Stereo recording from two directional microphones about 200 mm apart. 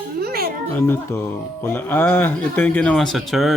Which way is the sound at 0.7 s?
10° left (ahead or behind).